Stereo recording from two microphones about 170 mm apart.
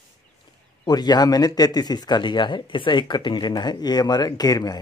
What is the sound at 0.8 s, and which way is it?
Speech, 25° left (ahead or behind).